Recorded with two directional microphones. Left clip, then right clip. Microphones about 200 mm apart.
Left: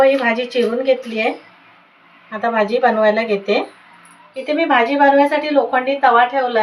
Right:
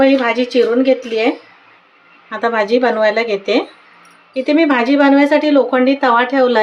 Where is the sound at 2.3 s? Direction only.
50° right (ahead or behind).